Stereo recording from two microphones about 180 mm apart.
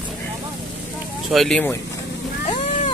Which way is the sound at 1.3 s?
Centre (ahead or behind).